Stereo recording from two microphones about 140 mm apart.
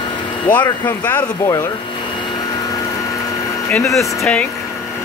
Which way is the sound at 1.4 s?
20° left (ahead or behind).